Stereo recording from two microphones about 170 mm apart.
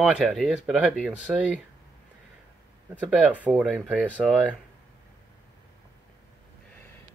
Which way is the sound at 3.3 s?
5° left (ahead or behind).